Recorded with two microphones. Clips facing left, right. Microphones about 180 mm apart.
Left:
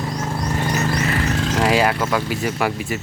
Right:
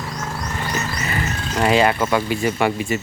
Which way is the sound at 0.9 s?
70° left (ahead or behind).